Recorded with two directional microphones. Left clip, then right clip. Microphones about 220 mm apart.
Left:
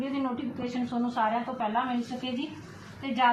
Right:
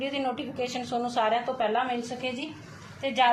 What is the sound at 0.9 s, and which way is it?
Speech, 45° right (ahead or behind).